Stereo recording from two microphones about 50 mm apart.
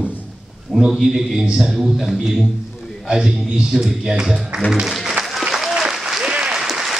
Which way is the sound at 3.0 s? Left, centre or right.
Centre.